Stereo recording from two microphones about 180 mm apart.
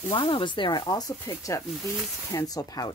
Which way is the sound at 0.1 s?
25° left (ahead or behind).